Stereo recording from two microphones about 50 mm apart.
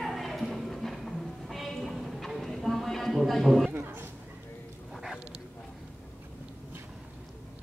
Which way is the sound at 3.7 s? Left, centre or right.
Right.